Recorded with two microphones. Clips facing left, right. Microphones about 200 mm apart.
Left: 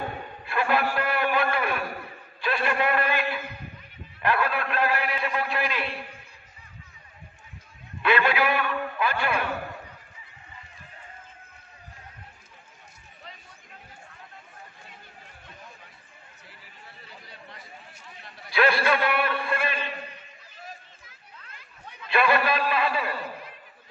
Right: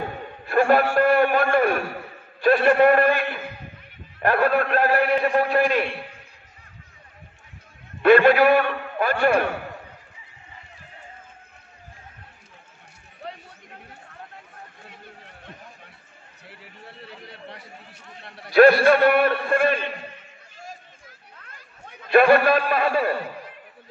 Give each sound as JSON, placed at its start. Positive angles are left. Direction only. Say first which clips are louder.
{"t": 0.5, "sound": "a man's voice", "louder": "right 8 dB", "side_deg": -45}
{"t": 0.9, "sound": "a sound", "louder": "right 8 dB", "side_deg": -50}
{"t": 2.4, "sound": "a man's voice", "louder": "right 10 dB", "side_deg": -45}
{"t": 8.0, "sound": "a man's voice", "louder": "right 9 dB", "side_deg": -45}
{"t": 13.2, "sound": "chatter", "louder": "right 11 dB", "side_deg": -60}
{"t": 14.9, "sound": "chatter", "louder": "right 5 dB", "side_deg": -60}
{"t": 18.5, "sound": "a man's voice", "louder": "right 9 dB", "side_deg": -45}
{"t": 21.4, "sound": "a sound", "louder": "right 2 dB", "side_deg": -50}